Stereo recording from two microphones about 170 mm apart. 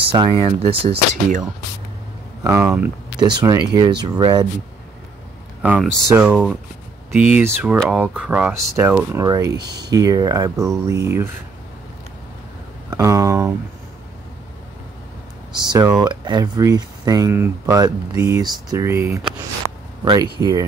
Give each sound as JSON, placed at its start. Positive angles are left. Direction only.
{"t": 0.1, "sound": "speech", "side_deg": -30}
{"t": 2.4, "sound": "speech", "side_deg": -15}
{"t": 3.2, "sound": "speech", "side_deg": -25}
{"t": 5.6, "sound": "speech", "side_deg": -10}
{"t": 9.6, "sound": "speech", "side_deg": -75}
{"t": 9.8, "sound": "speech", "side_deg": -20}
{"t": 12.9, "sound": "speech", "side_deg": -20}
{"t": 15.5, "sound": "speech", "side_deg": -25}